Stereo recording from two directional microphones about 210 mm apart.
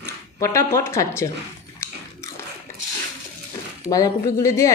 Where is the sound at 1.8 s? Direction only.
15° left (ahead or behind).